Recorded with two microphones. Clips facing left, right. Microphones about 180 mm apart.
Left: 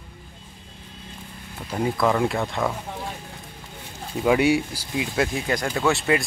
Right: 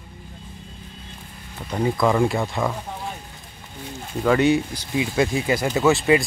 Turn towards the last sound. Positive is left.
turn(degrees=0)  # may be behind; listen again after turning